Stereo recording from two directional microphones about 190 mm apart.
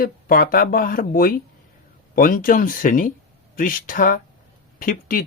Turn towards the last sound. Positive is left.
turn(degrees=45)  # may be behind; listen again after turning